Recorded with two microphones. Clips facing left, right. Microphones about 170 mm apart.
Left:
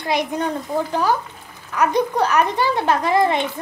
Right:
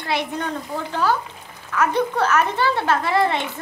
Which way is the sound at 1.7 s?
15° left (ahead or behind).